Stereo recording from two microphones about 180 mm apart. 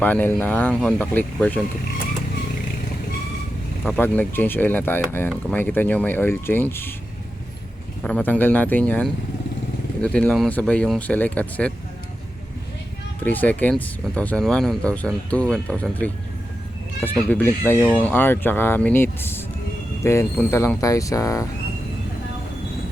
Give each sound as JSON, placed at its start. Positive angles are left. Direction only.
{"t": 0.0, "sound": "speech", "side_deg": 10}
{"t": 3.8, "sound": "speech", "side_deg": 10}
{"t": 8.0, "sound": "speech", "side_deg": 10}
{"t": 13.2, "sound": "speech", "side_deg": 10}
{"t": 17.2, "sound": "speech", "side_deg": 10}